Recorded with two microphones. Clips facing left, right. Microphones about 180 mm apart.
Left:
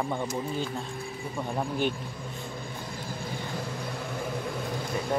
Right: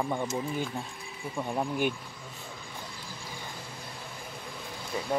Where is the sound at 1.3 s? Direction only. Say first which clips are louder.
Right 1 dB; centre (ahead or behind).